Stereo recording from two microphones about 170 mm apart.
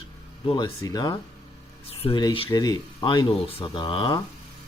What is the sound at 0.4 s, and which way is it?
Speech, 25° left (ahead or behind).